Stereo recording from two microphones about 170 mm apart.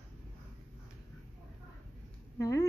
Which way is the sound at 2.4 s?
15° left (ahead or behind).